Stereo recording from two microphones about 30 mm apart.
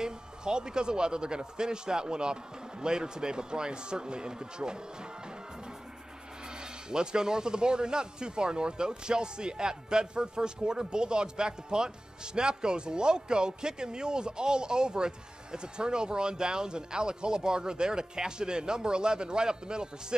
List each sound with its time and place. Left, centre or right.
0.0 s speech: right
6.5 s speech: right